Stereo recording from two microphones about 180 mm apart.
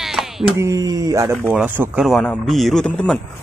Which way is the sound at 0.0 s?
Centre (ahead or behind).